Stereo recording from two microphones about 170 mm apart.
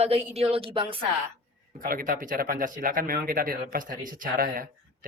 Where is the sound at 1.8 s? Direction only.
60° right (ahead or behind).